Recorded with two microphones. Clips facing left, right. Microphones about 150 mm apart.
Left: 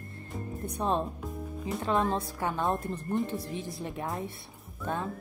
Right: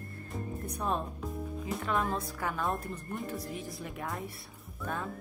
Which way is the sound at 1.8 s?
25° left (ahead or behind).